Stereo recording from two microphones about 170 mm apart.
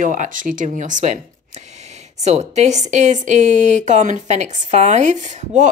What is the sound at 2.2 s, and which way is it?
A woman's voice, 40° right (ahead or behind).